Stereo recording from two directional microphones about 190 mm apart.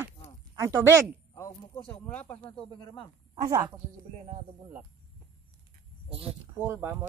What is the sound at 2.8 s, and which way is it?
Speech, 20° left (ahead or behind).